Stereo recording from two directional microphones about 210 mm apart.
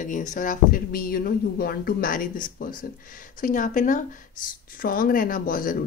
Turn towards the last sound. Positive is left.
turn(degrees=40)  # may be behind; listen again after turning